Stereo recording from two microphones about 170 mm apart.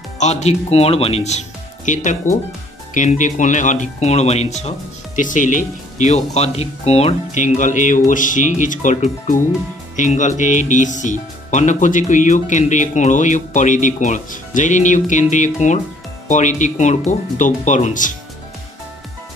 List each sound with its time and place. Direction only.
0.2 s speech: 40° left (ahead or behind)